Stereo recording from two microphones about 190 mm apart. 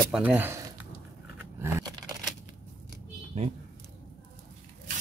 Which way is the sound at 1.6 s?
15° right (ahead or behind).